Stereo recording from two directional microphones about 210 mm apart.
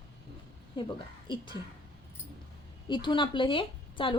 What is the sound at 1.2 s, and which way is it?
Speech, 20° left (ahead or behind).